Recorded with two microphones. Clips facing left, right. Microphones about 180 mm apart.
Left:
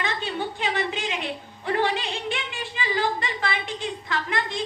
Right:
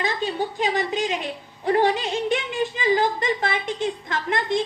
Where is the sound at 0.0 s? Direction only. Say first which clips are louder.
Right 4 dB; 40° right (ahead or behind).